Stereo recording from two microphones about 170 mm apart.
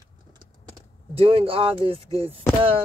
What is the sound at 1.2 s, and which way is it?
Speech, 35° right (ahead or behind).